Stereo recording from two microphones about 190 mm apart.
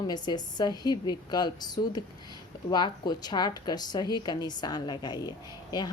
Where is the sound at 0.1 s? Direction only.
20° left (ahead or behind).